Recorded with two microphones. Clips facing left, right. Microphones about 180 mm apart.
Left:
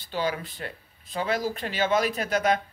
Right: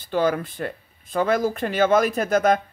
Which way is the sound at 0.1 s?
50° right (ahead or behind).